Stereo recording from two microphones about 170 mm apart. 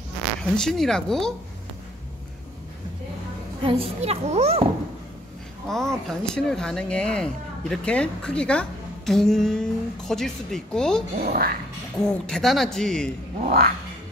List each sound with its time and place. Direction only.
0.4 s a woman's voice: 5° left (ahead or behind)
3.6 s a child's voice: 35° right (ahead or behind)
5.7 s a woman's voice: 5° left (ahead or behind)
11.1 s speech: 55° right (ahead or behind)
12.1 s a woman's voice: 5° left (ahead or behind)
13.4 s speech: 60° right (ahead or behind)